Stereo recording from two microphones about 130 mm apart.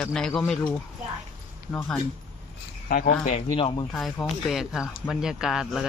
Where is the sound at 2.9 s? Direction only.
90° left.